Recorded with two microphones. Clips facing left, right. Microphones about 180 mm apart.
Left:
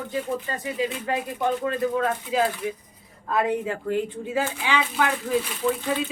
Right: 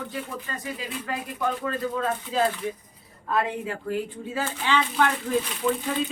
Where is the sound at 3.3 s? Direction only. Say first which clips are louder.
Left 3 dB; 25° left (ahead or behind).